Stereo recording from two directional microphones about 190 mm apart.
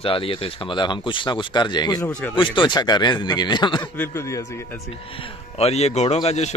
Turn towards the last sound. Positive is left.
turn(degrees=35)  # may be behind; listen again after turning